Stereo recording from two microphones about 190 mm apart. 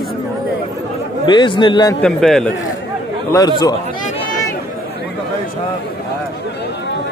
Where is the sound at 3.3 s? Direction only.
20° left (ahead or behind).